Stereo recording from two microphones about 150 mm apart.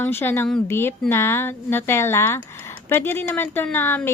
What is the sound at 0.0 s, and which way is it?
A woman's voice, 15° left (ahead or behind).